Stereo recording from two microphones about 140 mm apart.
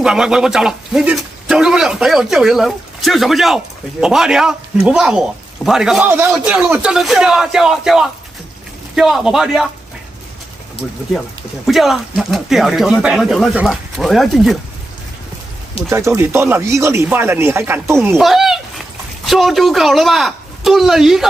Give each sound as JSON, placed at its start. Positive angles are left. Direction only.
{"t": 0.0, "sound": "a man's voice", "side_deg": -5}
{"t": 6.0, "sound": "a man's voice", "side_deg": -15}
{"t": 10.8, "sound": "a man's voice", "side_deg": 0}
{"t": 15.9, "sound": "speech", "side_deg": -20}
{"t": 18.1, "sound": "a man's voice", "side_deg": 0}